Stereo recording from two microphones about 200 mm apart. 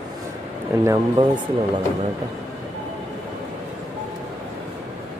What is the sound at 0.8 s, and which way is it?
Speech, 15° right (ahead or behind).